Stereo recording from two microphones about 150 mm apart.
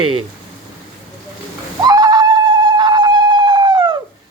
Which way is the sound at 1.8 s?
25° right (ahead or behind).